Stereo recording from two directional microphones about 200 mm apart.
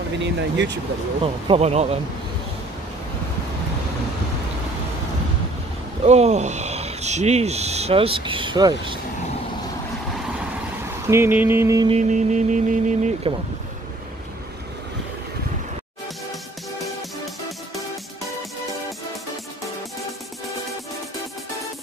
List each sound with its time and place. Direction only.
0.2 s speech: 60° right (ahead or behind)
1.2 s speech: 30° right (ahead or behind)
6.0 s speech: 35° right (ahead or behind)
11.1 s music: 10° right (ahead or behind)
11.9 s speech: 35° right (ahead or behind)